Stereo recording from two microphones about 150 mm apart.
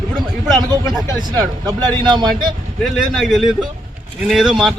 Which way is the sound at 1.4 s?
25° right (ahead or behind).